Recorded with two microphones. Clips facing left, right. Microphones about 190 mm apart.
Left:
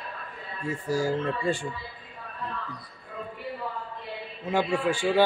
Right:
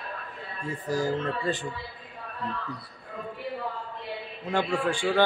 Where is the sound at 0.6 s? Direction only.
10° left (ahead or behind).